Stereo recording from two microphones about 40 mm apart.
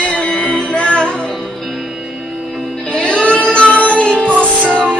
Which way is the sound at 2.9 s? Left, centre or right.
Left.